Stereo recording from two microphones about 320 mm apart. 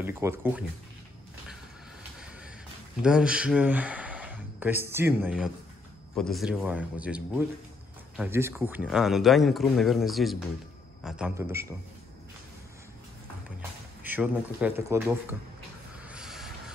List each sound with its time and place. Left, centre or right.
0.0 s speech: centre
3.0 s a man's voice: centre
13.6 s speech: centre
16.0 s a sound: centre